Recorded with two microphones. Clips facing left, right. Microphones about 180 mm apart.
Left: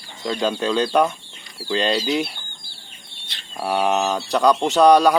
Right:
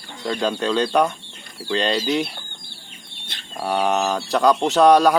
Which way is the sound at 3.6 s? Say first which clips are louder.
Even; 5° left (ahead or behind).